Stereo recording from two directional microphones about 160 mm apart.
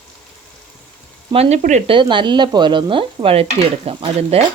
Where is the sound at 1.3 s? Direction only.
40° right (ahead or behind).